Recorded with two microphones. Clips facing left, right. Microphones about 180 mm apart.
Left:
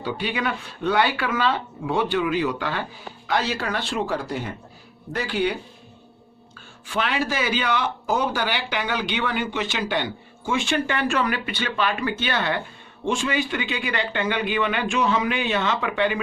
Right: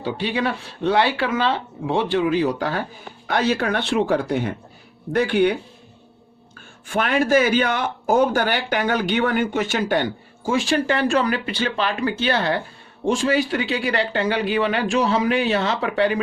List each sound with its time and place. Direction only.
0.0 s speech: 30° right (ahead or behind)
3.2 s speech: 55° right (ahead or behind)
6.8 s speech: 50° right (ahead or behind)